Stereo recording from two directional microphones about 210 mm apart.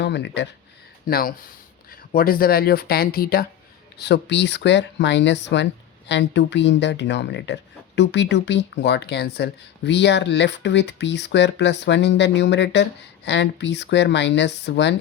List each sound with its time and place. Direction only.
0.0 s speech: 55° left (ahead or behind)
1.0 s speech: 45° left (ahead or behind)